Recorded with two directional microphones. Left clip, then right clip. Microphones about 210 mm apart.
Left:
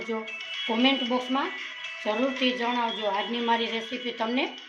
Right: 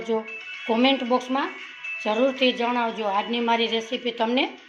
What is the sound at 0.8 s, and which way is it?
A woman's voice, 20° right (ahead or behind).